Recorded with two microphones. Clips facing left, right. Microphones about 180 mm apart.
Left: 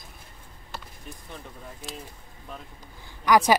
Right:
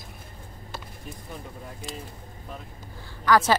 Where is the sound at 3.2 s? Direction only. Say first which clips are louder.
Left 1 dB; 15° left (ahead or behind).